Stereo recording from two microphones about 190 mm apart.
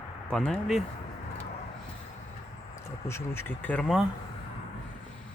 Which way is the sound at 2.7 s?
15° left (ahead or behind).